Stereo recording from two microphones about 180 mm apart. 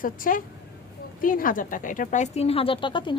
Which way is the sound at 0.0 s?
50° left (ahead or behind).